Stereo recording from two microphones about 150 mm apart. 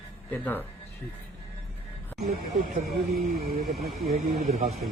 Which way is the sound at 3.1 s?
90° right.